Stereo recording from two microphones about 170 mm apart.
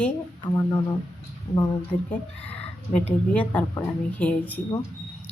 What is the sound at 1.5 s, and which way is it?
Speech, 20° left (ahead or behind).